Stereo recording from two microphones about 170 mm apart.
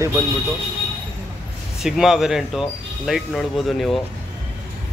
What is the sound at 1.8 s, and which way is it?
Speech, 5° right (ahead or behind).